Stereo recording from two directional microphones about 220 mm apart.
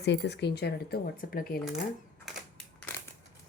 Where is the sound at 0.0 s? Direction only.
50° left (ahead or behind).